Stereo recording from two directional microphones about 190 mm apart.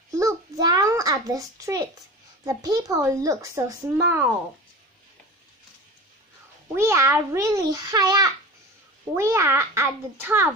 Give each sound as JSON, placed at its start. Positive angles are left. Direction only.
{"t": 0.1, "sound": "a sound", "side_deg": -15}
{"t": 2.4, "sound": "speech", "side_deg": -20}
{"t": 6.7, "sound": "speech", "side_deg": -15}